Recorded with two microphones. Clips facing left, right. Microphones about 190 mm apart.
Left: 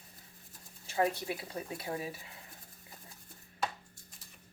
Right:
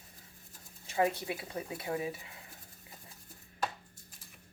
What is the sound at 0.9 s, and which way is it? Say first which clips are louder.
Speech: right 1 dB; 20° right (ahead or behind).